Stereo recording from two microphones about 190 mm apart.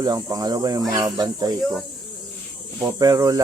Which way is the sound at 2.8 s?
20° right (ahead or behind).